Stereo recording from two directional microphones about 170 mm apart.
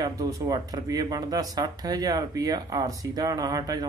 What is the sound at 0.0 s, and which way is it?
Speech, 20° right (ahead or behind).